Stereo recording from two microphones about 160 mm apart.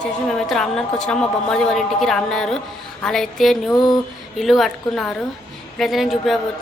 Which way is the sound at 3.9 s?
Centre (ahead or behind).